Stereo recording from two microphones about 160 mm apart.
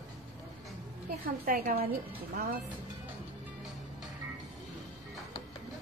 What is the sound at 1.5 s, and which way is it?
Speech, 60° right (ahead or behind).